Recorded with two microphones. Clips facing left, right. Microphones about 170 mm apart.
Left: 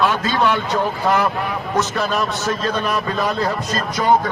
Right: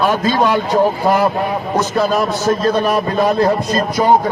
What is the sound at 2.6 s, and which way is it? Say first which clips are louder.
A man's voice: right 6 dB; 30° right (ahead or behind).